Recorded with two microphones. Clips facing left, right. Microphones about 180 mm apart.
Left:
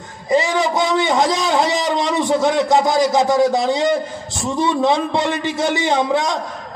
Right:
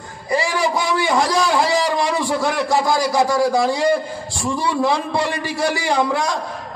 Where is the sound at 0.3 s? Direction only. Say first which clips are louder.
Left 3 dB; 20° left (ahead or behind).